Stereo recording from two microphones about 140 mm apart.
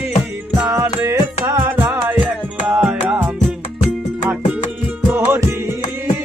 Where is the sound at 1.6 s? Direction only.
10° right (ahead or behind).